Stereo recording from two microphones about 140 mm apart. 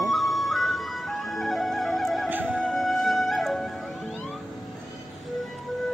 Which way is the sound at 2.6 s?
Centre (ahead or behind).